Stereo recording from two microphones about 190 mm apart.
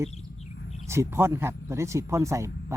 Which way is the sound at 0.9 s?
15° right (ahead or behind).